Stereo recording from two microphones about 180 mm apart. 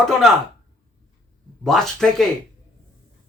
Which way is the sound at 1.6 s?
Centre (ahead or behind).